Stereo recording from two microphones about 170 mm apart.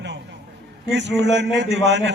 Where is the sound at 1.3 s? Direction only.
90° right.